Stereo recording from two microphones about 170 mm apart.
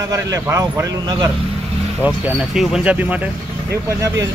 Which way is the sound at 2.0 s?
5° right (ahead or behind).